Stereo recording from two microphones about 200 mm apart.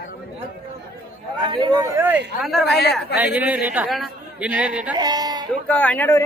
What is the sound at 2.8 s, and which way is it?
Speech, 55° left (ahead or behind).